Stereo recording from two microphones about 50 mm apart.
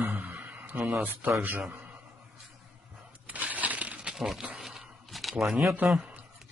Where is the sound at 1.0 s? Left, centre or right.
Right.